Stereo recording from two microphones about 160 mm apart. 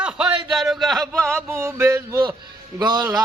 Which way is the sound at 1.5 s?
15° right (ahead or behind).